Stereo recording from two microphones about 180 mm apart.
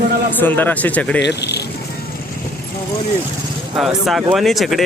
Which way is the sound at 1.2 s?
70° left (ahead or behind).